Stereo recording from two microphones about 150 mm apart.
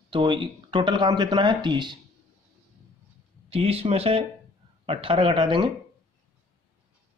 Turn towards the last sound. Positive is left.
turn(degrees=-30)  # may be behind; listen again after turning